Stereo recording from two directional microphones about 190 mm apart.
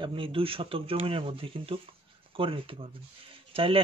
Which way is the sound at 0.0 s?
25° right (ahead or behind).